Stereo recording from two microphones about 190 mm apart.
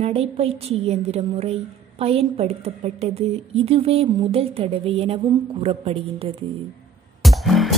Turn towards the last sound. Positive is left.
turn(degrees=0)  # may be behind; listen again after turning